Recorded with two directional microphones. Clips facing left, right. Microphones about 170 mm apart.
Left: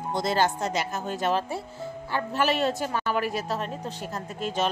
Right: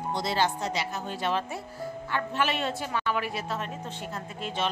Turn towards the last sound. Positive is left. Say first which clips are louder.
# left 4 dB
turn(degrees=40)  # may be behind; listen again after turning